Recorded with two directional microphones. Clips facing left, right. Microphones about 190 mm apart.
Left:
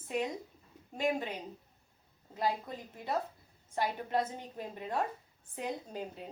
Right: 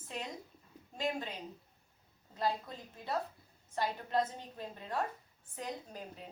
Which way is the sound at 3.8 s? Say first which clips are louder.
Left 1 dB; 15° left (ahead or behind).